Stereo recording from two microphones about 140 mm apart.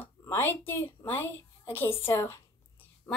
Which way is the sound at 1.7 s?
15° left (ahead or behind).